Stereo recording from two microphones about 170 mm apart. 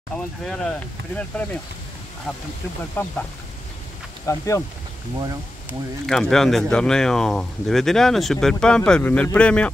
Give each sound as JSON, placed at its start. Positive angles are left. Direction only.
{"t": 0.1, "sound": "speech", "side_deg": 5}
{"t": 2.8, "sound": "speech", "side_deg": 10}
{"t": 4.3, "sound": "speech", "side_deg": 20}
{"t": 6.0, "sound": "speech", "side_deg": 5}